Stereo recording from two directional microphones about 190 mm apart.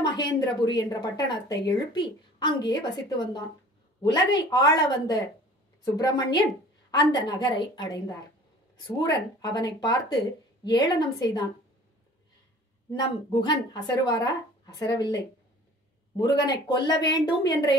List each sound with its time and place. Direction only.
0.2 s speech: 20° left (ahead or behind)
4.5 s speech: 20° left (ahead or behind)
12.9 s speech: 25° left (ahead or behind)
16.2 s speech: 20° left (ahead or behind)